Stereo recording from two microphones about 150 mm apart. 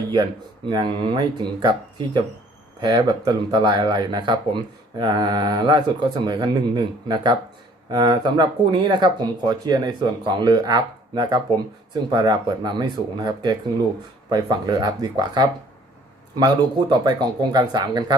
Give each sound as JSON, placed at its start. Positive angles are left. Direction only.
{"t": 0.7, "sound": "speech", "side_deg": -30}